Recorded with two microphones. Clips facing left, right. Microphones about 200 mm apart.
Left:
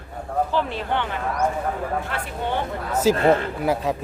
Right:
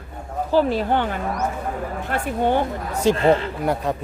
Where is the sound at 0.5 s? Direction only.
40° right (ahead or behind).